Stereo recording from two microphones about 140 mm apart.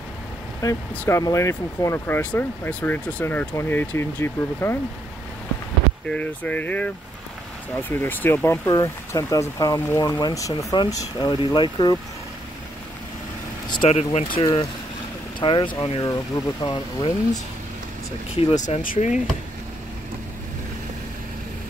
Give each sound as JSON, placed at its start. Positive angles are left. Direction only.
{"t": 0.6, "sound": "speech", "side_deg": 25}
{"t": 0.9, "sound": "speech", "side_deg": 15}
{"t": 6.0, "sound": "speech", "side_deg": 10}
{"t": 13.8, "sound": "speech", "side_deg": 50}
{"t": 14.4, "sound": "speech", "side_deg": 25}
{"t": 15.4, "sound": "speech", "side_deg": 35}
{"t": 18.3, "sound": "speech", "side_deg": 50}